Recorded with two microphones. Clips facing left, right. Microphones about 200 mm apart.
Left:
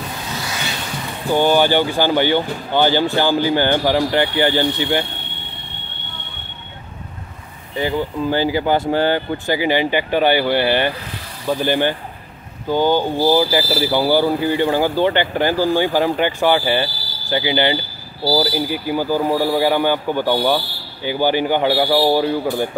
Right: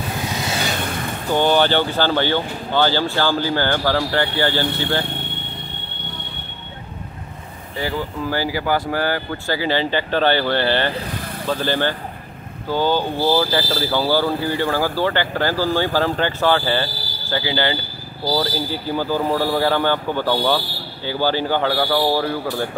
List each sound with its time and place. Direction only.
0.7 s a sound: 55° right (ahead or behind)
1.3 s speech: 10° left (ahead or behind)
7.7 s speech: 20° left (ahead or behind)